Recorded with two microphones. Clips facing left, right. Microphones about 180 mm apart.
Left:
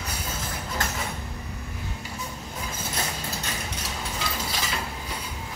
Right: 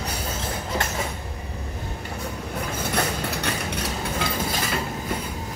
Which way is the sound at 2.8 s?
65° right (ahead or behind).